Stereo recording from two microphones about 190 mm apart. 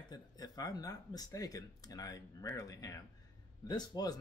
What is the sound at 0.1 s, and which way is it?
Speech, 20° left (ahead or behind).